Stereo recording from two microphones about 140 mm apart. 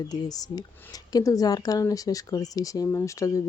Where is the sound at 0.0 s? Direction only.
25° left (ahead or behind).